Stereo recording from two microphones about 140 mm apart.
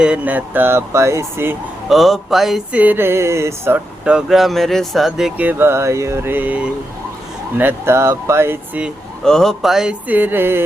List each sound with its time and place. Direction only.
0.0 s speech: 10° right (ahead or behind)
1.9 s speech: centre (ahead or behind); by 3.8 s 20° right (ahead or behind)
4.0 s speech: 5° right (ahead or behind)
9.2 s speech: 5° left (ahead or behind); by 10.6 s 15° right (ahead or behind)